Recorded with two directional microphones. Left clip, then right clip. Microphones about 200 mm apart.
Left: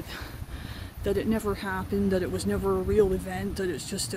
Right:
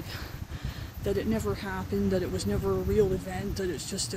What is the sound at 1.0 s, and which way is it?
Speech, 10° left (ahead or behind).